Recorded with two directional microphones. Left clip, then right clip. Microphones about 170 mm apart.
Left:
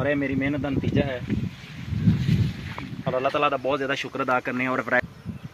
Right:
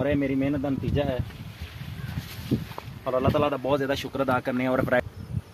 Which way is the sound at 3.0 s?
70° right (ahead or behind).